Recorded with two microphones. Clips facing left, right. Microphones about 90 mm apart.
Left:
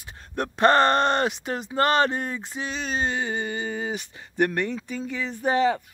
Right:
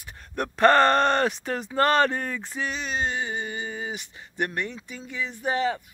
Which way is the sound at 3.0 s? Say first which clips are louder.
Left 3 dB; 50° left (ahead or behind).